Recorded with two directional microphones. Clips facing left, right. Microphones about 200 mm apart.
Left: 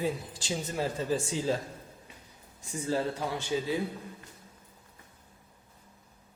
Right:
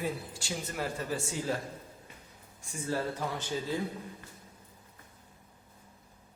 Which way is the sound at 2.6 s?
20° left (ahead or behind).